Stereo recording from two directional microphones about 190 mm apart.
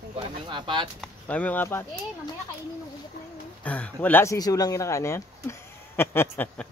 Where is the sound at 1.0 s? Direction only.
5° left (ahead or behind).